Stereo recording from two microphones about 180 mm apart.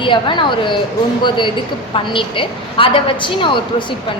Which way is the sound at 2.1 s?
30° left (ahead or behind).